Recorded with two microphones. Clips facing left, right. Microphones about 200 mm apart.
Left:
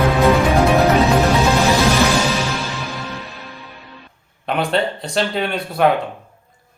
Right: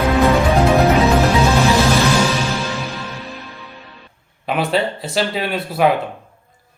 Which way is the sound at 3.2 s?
Centre (ahead or behind).